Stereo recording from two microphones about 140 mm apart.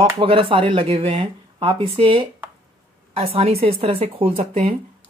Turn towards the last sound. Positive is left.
turn(degrees=-45)  # may be behind; listen again after turning